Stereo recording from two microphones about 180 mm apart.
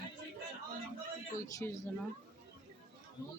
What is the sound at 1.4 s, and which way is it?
Speech, 20° left (ahead or behind).